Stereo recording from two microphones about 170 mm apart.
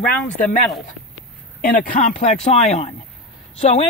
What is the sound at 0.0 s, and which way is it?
Speech, 5° left (ahead or behind).